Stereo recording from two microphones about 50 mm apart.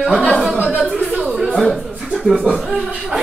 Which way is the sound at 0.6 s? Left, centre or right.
Right.